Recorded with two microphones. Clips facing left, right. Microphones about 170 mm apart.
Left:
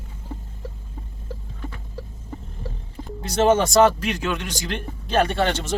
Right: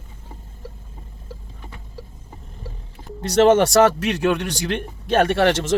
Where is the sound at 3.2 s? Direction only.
80° right.